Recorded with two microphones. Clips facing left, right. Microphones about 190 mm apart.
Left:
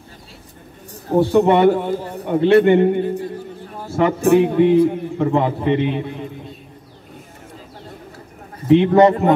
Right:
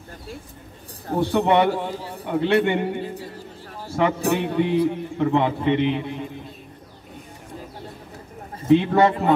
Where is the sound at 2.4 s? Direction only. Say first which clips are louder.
Left 7 dB; centre (ahead or behind).